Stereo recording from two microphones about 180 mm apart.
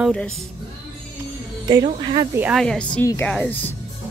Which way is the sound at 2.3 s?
10° right (ahead or behind).